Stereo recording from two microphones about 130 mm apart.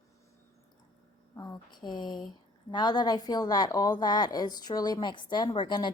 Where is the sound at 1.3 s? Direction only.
30° left (ahead or behind).